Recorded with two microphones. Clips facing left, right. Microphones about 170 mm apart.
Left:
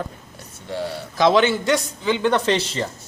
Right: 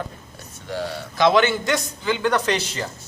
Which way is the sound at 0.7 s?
30° left (ahead or behind).